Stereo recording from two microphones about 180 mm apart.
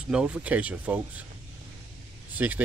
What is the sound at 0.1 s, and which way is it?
Speech, 5° right (ahead or behind).